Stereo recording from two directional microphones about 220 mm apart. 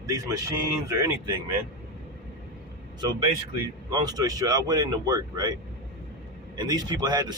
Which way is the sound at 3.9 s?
15° right (ahead or behind).